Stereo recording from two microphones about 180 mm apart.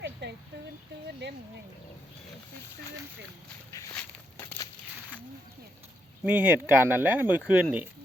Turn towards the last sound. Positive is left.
turn(degrees=-10)  # may be behind; listen again after turning